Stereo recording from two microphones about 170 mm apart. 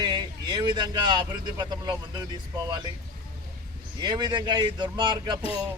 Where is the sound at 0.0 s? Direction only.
25° right (ahead or behind).